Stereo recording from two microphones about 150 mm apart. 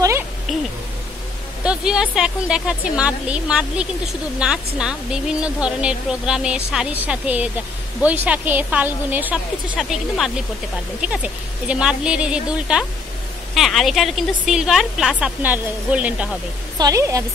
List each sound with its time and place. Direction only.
1.6 s a woman's voice: 5° right (ahead or behind)
16.7 s speech: 25° right (ahead or behind)